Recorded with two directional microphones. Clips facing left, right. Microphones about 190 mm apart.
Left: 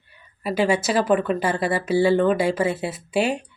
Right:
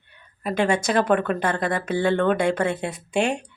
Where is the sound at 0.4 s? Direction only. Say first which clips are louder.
Left 1 dB; 5° left (ahead or behind).